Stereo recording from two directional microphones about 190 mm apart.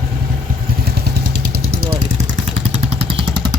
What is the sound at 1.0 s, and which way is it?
Vehicle, 55° right (ahead or behind).